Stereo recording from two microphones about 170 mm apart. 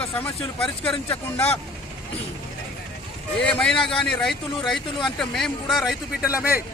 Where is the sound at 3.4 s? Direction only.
5° left (ahead or behind).